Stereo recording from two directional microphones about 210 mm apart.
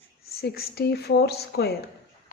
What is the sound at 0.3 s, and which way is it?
Speech, 45° left (ahead or behind).